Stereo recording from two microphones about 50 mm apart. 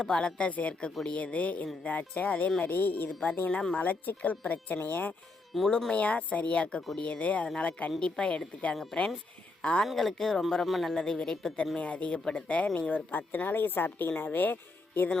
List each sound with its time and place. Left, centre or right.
0.0 s speech: centre
0.7 s speech: centre; by 5.1 s left
5.5 s speech: centre
5.9 s speech: left
7.9 s speech: centre
9.6 s speech: left
9.8 s speech: centre
10.9 s speech: centre; by 15.1 s left